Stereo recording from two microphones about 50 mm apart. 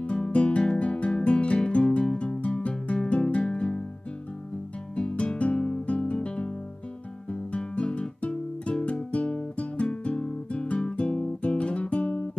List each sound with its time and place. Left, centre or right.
0.0 s music: left
4.9 s music: left
7.2 s guitar: left